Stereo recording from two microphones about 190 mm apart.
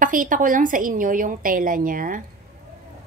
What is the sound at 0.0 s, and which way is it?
A woman's voice, 45° right (ahead or behind).